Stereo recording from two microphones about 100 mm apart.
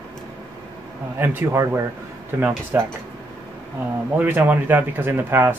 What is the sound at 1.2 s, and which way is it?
Speech, 25° right (ahead or behind).